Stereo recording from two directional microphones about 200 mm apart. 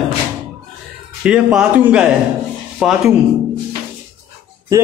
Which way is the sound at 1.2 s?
5° right (ahead or behind).